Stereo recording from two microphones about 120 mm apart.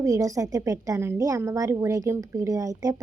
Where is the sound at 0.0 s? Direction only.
30° right (ahead or behind).